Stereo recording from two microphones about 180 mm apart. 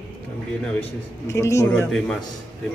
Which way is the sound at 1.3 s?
15° left (ahead or behind).